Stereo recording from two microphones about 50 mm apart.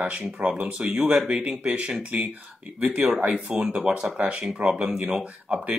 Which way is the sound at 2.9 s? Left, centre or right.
Centre.